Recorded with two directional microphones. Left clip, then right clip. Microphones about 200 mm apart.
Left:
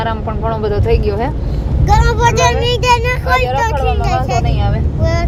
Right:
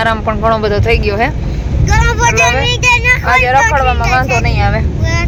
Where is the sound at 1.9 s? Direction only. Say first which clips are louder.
Right 1 dB; 25° left (ahead or behind).